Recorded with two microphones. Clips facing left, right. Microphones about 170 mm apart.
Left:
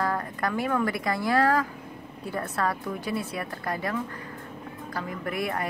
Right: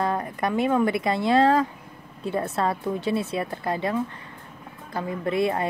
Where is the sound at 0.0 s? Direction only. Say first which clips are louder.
Right 3 dB; 20° right (ahead or behind).